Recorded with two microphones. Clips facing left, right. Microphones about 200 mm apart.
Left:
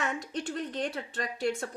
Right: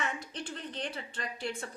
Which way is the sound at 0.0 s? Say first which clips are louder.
Left 4 dB; 45° left (ahead or behind).